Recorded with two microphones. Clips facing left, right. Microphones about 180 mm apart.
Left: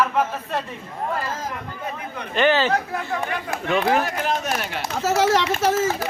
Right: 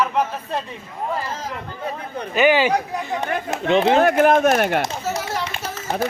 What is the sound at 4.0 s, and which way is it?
Speech, 55° right (ahead or behind).